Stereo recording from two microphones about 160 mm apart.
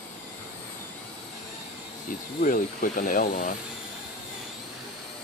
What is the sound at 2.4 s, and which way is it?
Speech, 55° left (ahead or behind).